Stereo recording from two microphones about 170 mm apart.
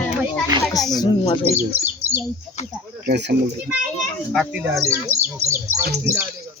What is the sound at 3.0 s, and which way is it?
Speech, 80° right.